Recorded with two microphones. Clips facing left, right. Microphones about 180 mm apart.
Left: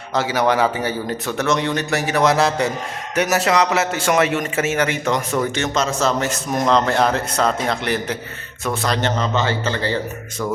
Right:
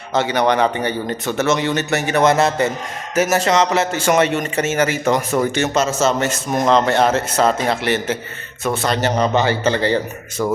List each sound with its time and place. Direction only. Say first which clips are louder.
0.1 s a man's voice: right 2 dB; centre (ahead or behind); by 10.0 s 20° right (ahead or behind)